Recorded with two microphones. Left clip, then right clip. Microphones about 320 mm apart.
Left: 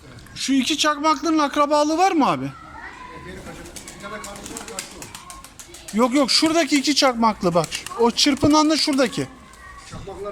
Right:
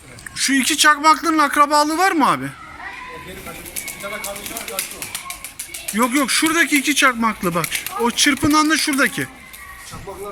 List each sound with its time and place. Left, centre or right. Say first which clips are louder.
0.3 s speech: right 4 dB; centre
6.0 s speech: even; centre